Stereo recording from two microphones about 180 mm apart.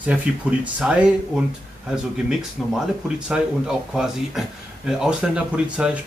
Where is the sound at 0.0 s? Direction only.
5° right (ahead or behind).